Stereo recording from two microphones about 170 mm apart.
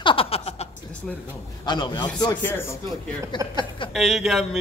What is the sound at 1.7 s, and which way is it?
Speech, 25° left (ahead or behind).